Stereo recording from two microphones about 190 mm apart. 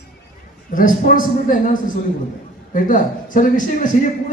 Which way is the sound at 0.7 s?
45° left (ahead or behind).